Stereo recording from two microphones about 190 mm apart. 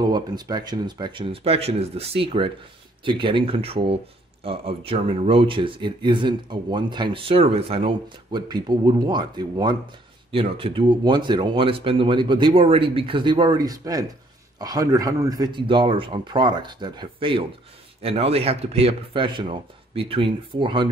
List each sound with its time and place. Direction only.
0.0 s speech: 20° right (ahead or behind)